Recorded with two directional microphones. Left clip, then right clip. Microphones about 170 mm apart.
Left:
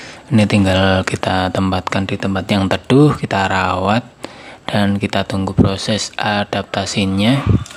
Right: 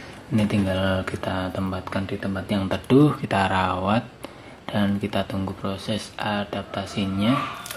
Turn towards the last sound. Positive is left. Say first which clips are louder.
# left 8 dB
turn(degrees=55)  # may be behind; listen again after turning